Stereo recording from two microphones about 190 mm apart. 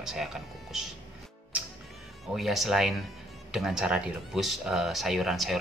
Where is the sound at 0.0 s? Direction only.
Centre (ahead or behind).